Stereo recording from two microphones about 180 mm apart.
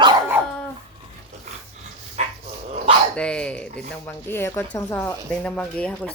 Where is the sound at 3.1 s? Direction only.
5° left (ahead or behind).